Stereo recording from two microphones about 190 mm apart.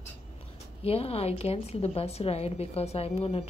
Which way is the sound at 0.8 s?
30° left (ahead or behind).